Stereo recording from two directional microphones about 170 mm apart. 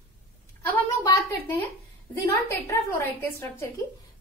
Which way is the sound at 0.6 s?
10° left (ahead or behind).